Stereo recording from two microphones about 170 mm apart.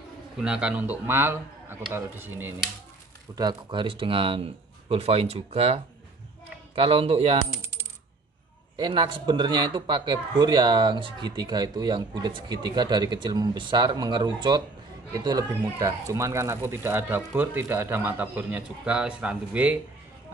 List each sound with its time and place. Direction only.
0.4 s speech: 5° right (ahead or behind)
3.3 s speech: 25° right (ahead or behind)
8.7 s speech: 30° right (ahead or behind); by 19.8 s 5° right (ahead or behind)